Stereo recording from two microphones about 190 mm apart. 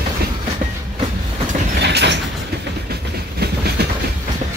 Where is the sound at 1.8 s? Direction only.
65° right (ahead or behind).